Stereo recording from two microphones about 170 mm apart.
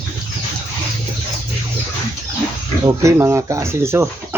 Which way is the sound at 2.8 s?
15° right (ahead or behind).